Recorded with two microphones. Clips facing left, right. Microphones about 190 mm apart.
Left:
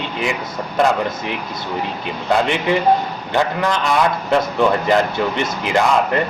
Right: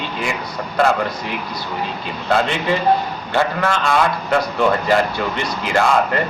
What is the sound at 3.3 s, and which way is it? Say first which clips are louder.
Speech: even; 20° left (ahead or behind).